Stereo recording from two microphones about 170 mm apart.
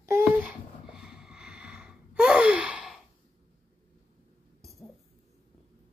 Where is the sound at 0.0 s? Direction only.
10° right (ahead or behind).